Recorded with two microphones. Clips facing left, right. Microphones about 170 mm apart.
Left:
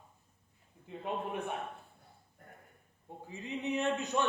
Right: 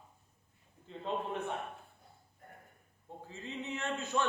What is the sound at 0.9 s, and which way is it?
Speech, 15° left (ahead or behind).